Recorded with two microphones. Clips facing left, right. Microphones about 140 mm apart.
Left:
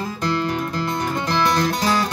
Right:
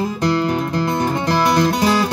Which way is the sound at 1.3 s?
10° right (ahead or behind).